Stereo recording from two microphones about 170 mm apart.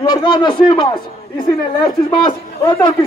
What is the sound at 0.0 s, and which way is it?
Speech, 25° left (ahead or behind).